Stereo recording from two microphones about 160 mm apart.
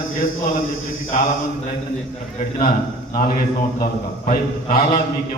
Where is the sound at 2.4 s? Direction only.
60° left (ahead or behind).